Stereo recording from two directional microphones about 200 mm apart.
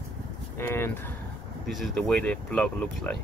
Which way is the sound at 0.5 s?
10° left (ahead or behind).